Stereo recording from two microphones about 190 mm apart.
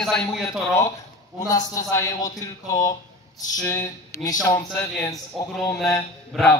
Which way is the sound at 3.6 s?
15° left (ahead or behind).